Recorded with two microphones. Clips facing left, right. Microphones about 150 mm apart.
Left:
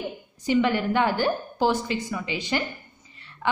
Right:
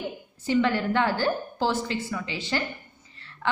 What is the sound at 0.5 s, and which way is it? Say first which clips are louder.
A woman's voice: left 1 dB; 15° left (ahead or behind).